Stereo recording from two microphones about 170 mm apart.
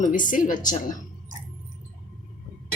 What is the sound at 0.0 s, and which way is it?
Speech, 50° left (ahead or behind).